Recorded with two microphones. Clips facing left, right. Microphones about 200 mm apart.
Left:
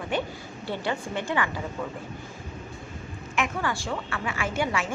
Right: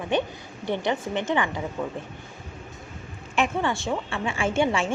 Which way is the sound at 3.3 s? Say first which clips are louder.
Right 4 dB; 25° right (ahead or behind).